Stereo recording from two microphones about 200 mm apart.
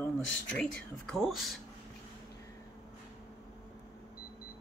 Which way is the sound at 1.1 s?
Centre (ahead or behind).